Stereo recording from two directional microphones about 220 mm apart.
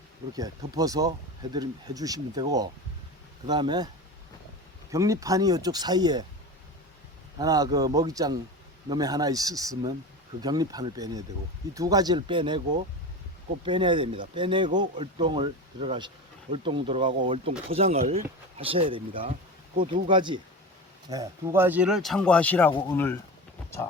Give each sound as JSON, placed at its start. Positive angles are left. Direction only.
{"t": 0.3, "sound": "speech", "side_deg": -15}
{"t": 4.9, "sound": "speech", "side_deg": -15}
{"t": 7.3, "sound": "speech", "side_deg": -15}
{"t": 13.7, "sound": "speech", "side_deg": -20}